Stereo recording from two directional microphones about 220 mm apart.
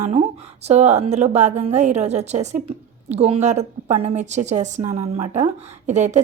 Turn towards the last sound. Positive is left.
turn(degrees=-30)  # may be behind; listen again after turning